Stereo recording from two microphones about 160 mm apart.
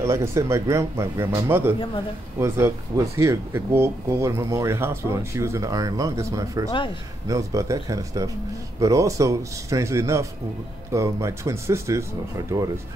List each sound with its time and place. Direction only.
0.0 s speech: 15° right (ahead or behind)